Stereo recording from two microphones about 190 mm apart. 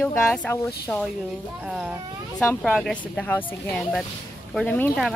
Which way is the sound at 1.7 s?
5° right (ahead or behind).